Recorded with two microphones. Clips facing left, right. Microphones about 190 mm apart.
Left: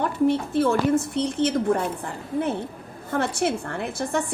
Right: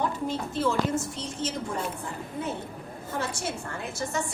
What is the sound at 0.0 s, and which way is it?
A woman's voice, 60° left (ahead or behind).